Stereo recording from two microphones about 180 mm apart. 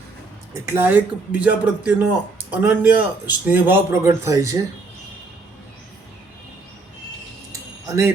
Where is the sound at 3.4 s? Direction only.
10° right (ahead or behind).